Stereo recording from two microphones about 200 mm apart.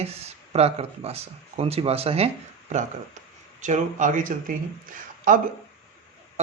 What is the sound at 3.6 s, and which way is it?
Speech, 40° right (ahead or behind).